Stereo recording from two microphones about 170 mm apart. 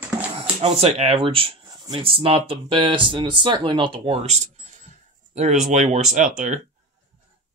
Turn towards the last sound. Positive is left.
turn(degrees=-50)  # may be behind; listen again after turning